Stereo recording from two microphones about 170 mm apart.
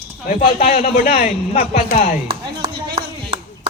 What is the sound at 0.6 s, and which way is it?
Speech, 55° left (ahead or behind).